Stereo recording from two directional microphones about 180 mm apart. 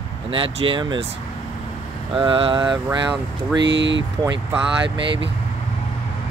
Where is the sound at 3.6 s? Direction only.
85° right.